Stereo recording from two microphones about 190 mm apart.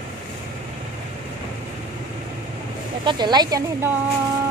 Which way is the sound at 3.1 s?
20° right (ahead or behind).